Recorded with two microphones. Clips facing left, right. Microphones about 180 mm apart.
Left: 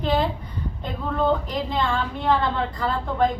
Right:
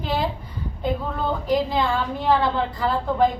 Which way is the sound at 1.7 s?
5° right (ahead or behind).